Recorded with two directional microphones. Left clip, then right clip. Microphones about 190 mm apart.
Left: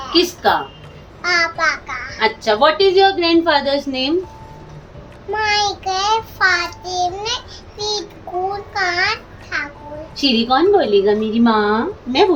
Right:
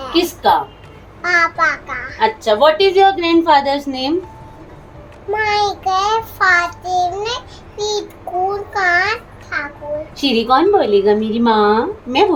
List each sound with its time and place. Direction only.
1.2 s a child's voice: 15° right (ahead or behind)
2.1 s a woman's voice: centre (ahead or behind)
5.3 s child singing: 20° right (ahead or behind)
8.7 s babbling: 20° right (ahead or behind)
10.2 s a woman's voice: centre (ahead or behind)